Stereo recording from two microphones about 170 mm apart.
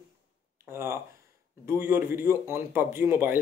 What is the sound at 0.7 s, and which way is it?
Speech, 15° right (ahead or behind).